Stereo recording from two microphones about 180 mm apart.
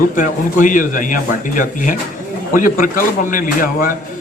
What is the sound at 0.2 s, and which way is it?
A man's voice, 45° left (ahead or behind).